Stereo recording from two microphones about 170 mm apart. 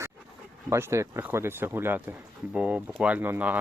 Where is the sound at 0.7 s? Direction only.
15° right (ahead or behind).